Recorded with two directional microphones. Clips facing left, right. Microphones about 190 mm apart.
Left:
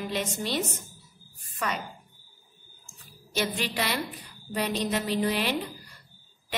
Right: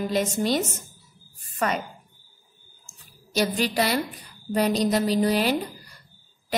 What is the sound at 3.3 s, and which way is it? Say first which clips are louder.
A woman's voice: right 6 dB; 40° right (ahead or behind).